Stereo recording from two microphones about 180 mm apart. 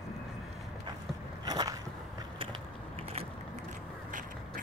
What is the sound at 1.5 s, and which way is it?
Biting, 20° right (ahead or behind).